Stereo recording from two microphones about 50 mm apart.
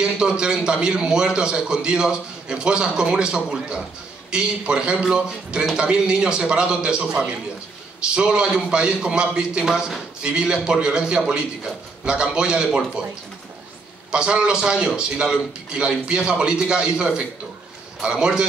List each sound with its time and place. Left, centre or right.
0.2 s a man's voice: centre
14.1 s a man's voice: centre